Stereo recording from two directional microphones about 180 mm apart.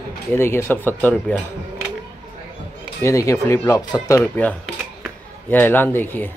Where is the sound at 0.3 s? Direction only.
15° left (ahead or behind).